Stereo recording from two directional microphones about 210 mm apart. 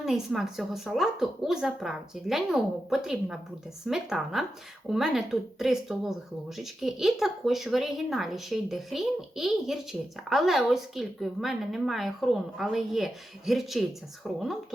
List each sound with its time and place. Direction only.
0.0 s a woman's voice: centre (ahead or behind)